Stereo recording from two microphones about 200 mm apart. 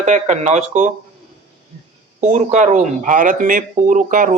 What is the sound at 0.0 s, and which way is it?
Speech, 35° right (ahead or behind).